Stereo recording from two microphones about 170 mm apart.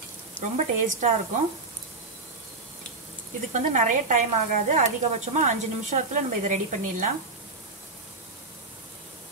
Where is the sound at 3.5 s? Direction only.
45° right (ahead or behind).